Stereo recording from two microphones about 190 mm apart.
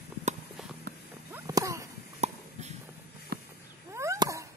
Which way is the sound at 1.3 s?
15° right (ahead or behind).